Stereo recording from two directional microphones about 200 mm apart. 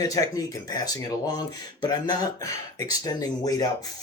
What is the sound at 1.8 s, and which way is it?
Speech, 20° left (ahead or behind).